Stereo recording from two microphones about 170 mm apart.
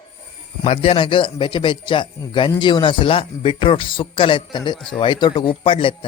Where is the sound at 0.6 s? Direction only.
35° left (ahead or behind).